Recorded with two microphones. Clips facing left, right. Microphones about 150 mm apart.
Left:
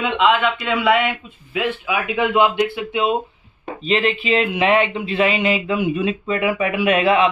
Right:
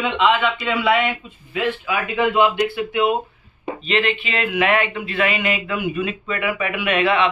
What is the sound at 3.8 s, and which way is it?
A man's voice, 35° left (ahead or behind).